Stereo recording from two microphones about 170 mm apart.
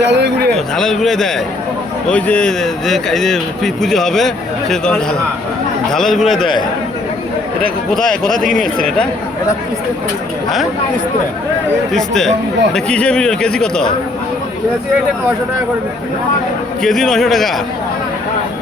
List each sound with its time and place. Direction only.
0.0 s speech: 85° right
0.5 s speech: centre (ahead or behind)
7.9 s speech: 5° left (ahead or behind)
11.9 s speech: 5° left (ahead or behind)
16.8 s speech: 5° left (ahead or behind)